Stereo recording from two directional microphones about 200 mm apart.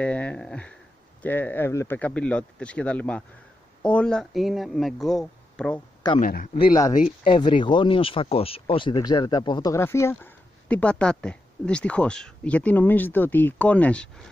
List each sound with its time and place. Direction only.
0.0 s a sound: 5° left (ahead or behind)
1.2 s speech: 10° left (ahead or behind)
6.2 s a man's voice: 45° left (ahead or behind)
6.6 s speech: 20° left (ahead or behind)